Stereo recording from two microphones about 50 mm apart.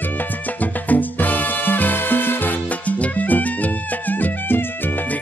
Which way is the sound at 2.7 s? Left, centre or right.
Left.